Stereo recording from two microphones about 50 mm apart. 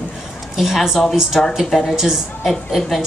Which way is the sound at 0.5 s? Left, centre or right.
Centre.